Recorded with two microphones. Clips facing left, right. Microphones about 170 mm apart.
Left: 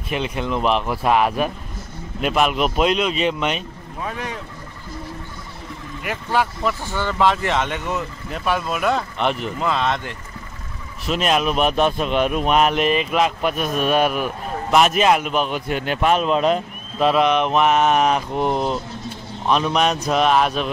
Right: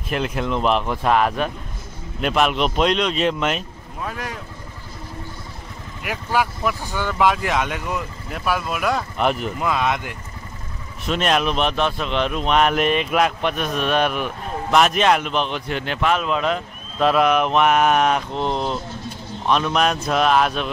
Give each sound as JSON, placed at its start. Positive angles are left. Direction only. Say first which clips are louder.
{"t": 0.1, "sound": "speech", "louder": "even", "side_deg": 0}
{"t": 6.0, "sound": "speech", "louder": "even", "side_deg": -5}
{"t": 11.1, "sound": "a man's voice", "louder": "even", "side_deg": 5}
{"t": 17.0, "sound": "speech", "louder": "even", "side_deg": 0}
{"t": 18.3, "sound": "a man's voice", "louder": "left 2 dB", "side_deg": 10}